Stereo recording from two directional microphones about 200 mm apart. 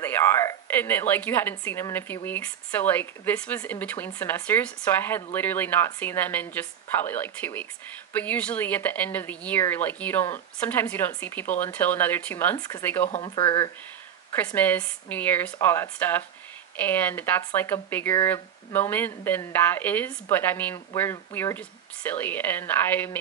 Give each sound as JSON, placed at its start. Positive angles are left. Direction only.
{"t": 0.0, "sound": "speech", "side_deg": 10}
{"t": 13.1, "sound": "speech", "side_deg": 25}
{"t": 14.3, "sound": "speech", "side_deg": 10}